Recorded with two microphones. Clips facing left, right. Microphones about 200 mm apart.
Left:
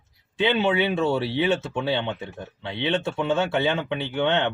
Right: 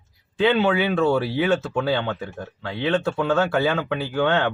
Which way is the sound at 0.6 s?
20° left (ahead or behind).